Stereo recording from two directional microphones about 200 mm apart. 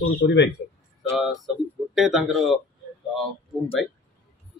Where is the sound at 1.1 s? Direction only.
Centre (ahead or behind).